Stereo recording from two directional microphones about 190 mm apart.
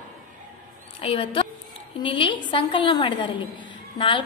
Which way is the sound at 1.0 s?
30° left (ahead or behind).